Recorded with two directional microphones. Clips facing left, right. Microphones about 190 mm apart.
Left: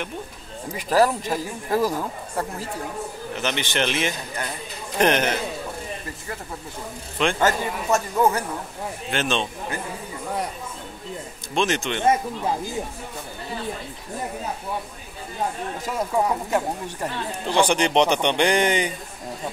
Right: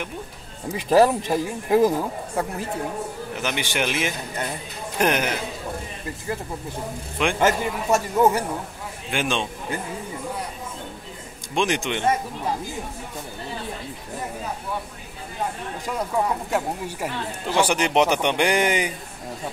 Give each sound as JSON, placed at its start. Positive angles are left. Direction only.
{"t": 0.8, "sound": "speech", "side_deg": -20}
{"t": 7.2, "sound": "speech", "side_deg": -15}
{"t": 11.5, "sound": "speech", "side_deg": -15}
{"t": 16.4, "sound": "speech", "side_deg": -5}